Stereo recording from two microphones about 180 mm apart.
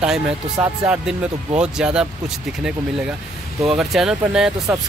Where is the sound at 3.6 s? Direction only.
Centre (ahead or behind).